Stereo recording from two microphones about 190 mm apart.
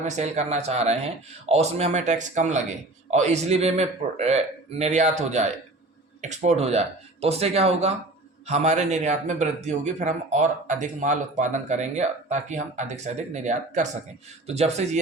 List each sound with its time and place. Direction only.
0.0 s speech: 35° right (ahead or behind)